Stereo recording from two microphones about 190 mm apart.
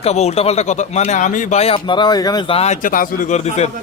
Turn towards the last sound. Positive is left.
turn(degrees=35)  # may be behind; listen again after turning